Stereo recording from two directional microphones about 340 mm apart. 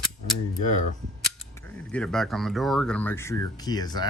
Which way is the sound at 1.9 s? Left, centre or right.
Centre.